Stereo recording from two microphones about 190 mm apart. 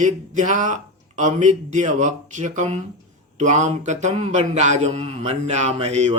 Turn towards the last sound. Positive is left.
turn(degrees=-35)  # may be behind; listen again after turning